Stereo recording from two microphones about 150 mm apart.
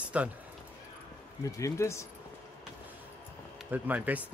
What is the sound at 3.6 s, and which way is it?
Speech, 10° right (ahead or behind).